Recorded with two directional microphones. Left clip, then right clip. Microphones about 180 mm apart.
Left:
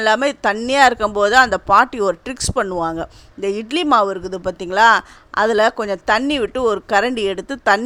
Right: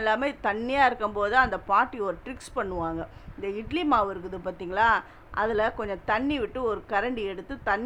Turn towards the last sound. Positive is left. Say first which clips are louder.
# left 12 dB
turn(degrees=55)  # may be behind; listen again after turning